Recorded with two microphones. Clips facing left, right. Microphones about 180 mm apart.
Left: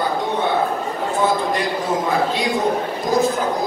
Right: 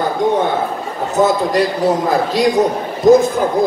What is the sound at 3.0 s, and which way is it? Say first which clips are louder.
Speech: right 12 dB; 45° right (ahead or behind).